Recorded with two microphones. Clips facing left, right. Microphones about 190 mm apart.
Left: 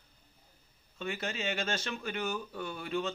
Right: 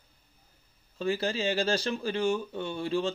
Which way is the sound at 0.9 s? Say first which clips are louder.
Right 8 dB; 35° right (ahead or behind).